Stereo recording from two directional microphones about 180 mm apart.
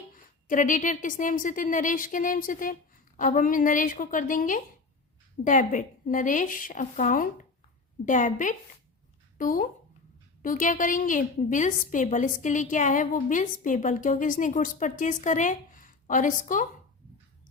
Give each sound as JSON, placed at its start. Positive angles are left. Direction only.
{"t": 0.1, "sound": "a woman's voice", "side_deg": 45}